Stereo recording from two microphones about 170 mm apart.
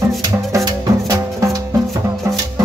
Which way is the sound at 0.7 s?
25° right (ahead or behind).